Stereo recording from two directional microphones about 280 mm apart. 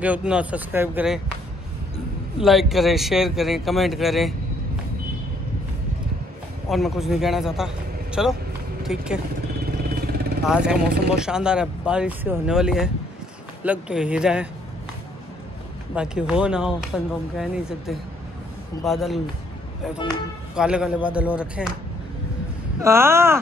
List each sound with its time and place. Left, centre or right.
0.0 s speech: centre
2.3 s speech: centre
6.7 s a man's voice: centre
9.7 s vehicle: right
10.4 s speech: centre
15.9 s speech: centre
20.5 s speech: centre
22.8 s speech: centre